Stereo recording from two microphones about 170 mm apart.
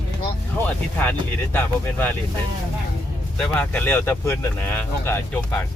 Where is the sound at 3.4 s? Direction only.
10° left (ahead or behind).